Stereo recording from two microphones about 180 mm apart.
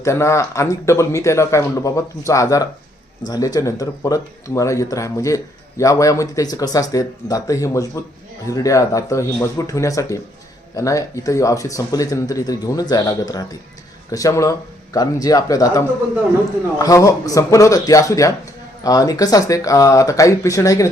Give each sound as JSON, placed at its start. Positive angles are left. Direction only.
{"t": 0.0, "sound": "a man's voice", "side_deg": 15}